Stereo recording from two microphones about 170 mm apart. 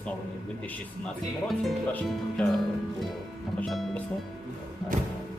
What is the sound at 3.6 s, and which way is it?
Speech, centre (ahead or behind).